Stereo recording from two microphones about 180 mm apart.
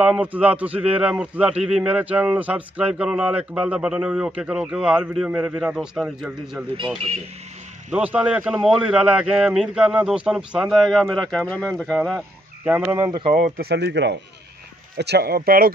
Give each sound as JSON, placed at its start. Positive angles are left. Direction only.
{"t": 0.0, "sound": "a man's voice", "side_deg": -5}
{"t": 7.9, "sound": "a man's voice", "side_deg": -5}
{"t": 12.6, "sound": "speech", "side_deg": -10}
{"t": 13.3, "sound": "speech", "side_deg": -50}